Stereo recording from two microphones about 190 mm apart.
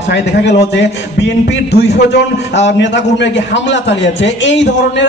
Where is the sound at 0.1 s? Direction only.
65° left (ahead or behind).